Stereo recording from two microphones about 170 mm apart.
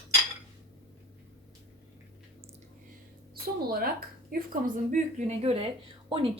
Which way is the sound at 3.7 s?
60° right (ahead or behind).